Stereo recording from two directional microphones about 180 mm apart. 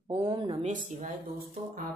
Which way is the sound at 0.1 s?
30° right (ahead or behind).